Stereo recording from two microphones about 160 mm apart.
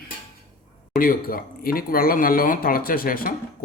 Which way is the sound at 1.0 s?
60° left (ahead or behind).